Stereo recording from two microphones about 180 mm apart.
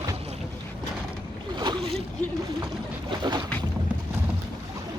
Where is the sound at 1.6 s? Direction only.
25° right (ahead or behind).